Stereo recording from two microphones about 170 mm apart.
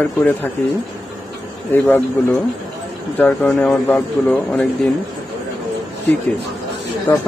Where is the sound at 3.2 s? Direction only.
10° left (ahead or behind).